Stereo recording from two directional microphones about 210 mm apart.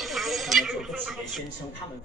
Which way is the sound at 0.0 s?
Centre (ahead or behind).